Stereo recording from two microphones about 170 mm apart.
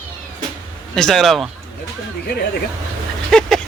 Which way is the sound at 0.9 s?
5° left (ahead or behind).